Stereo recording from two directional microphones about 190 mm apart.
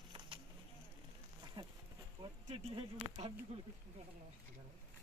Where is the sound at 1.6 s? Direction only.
20° right (ahead or behind).